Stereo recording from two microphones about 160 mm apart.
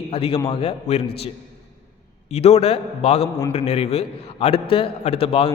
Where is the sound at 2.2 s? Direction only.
40° left (ahead or behind).